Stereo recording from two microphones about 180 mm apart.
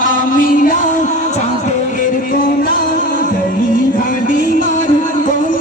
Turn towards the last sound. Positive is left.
turn(degrees=50)  # may be behind; listen again after turning